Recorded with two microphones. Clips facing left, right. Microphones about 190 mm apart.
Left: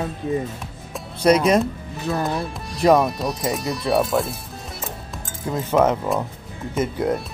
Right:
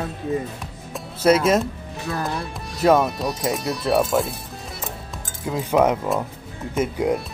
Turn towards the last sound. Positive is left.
turn(degrees=-10)  # may be behind; listen again after turning